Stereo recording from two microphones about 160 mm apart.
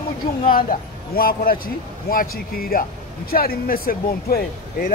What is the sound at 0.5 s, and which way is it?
Speech, 60° left (ahead or behind).